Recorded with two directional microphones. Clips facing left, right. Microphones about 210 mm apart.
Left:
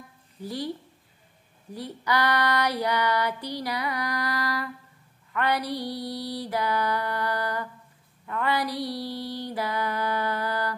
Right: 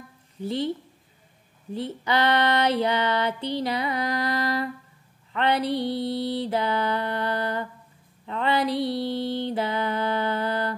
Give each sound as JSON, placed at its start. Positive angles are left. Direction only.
{"t": 0.4, "sound": "female singing", "side_deg": -25}